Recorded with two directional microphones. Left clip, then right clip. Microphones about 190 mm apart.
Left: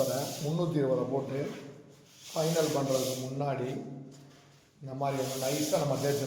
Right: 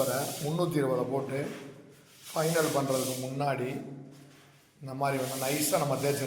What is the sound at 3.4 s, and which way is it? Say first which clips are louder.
Speech: right 3 dB; centre (ahead or behind).